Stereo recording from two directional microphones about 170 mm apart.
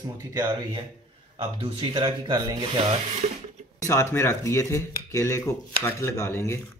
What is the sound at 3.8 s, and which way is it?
Speech, 15° left (ahead or behind).